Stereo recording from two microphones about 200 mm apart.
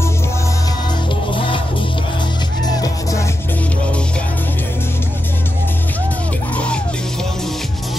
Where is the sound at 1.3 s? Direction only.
25° left (ahead or behind).